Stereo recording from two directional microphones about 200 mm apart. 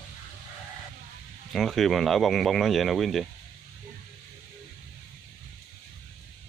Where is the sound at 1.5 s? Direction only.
Centre (ahead or behind).